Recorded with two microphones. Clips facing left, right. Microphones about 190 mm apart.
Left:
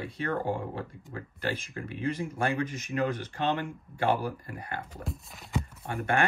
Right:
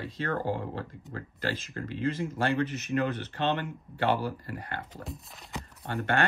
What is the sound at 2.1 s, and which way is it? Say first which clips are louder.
Speech: even; 10° left (ahead or behind).